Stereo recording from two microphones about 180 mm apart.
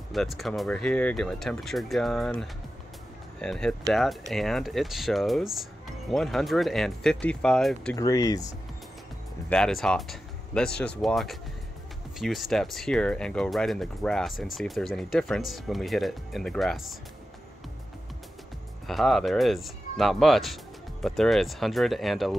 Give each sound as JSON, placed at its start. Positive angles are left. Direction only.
{"t": 0.1, "sound": "speech", "side_deg": 0}
{"t": 7.9, "sound": "speech", "side_deg": 20}
{"t": 9.5, "sound": "speech", "side_deg": 0}
{"t": 18.9, "sound": "speech", "side_deg": 0}